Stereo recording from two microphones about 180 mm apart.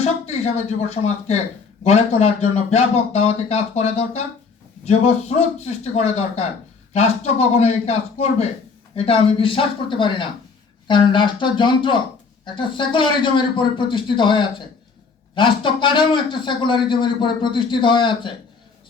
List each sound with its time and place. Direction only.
0.0 s a man's voice: 35° left (ahead or behind)